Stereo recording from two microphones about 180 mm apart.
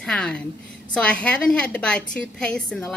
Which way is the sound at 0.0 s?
5° left (ahead or behind).